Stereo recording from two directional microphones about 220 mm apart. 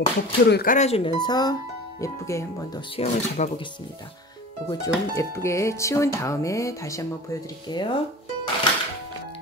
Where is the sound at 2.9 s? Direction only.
30° left (ahead or behind).